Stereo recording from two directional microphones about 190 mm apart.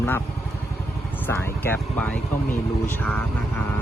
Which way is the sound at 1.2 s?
10° left (ahead or behind).